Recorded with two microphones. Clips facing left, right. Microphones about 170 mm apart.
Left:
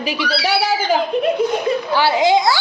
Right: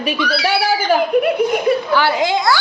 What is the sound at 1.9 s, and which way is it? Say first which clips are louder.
Speech: left 2 dB; 20° left (ahead or behind).